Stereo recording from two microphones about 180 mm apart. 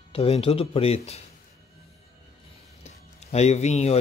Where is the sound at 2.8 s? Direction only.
35° left (ahead or behind).